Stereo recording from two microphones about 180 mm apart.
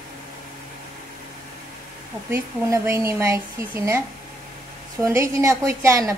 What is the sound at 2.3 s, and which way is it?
Speech, 15° right (ahead or behind).